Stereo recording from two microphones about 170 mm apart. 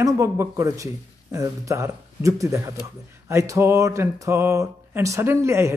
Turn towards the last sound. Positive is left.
turn(degrees=-15)  # may be behind; listen again after turning